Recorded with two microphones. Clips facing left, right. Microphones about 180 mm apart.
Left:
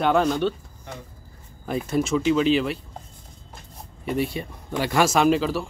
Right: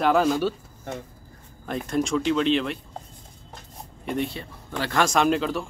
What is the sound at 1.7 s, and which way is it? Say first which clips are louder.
Speech: left 2 dB; 5° left (ahead or behind).